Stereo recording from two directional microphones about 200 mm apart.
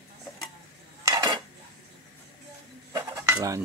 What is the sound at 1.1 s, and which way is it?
Cutlery, 20° right (ahead or behind).